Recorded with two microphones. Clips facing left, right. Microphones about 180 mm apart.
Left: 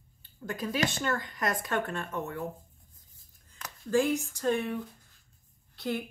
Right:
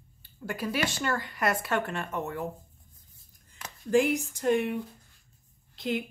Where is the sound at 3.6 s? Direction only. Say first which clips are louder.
Right 2 dB; 15° right (ahead or behind).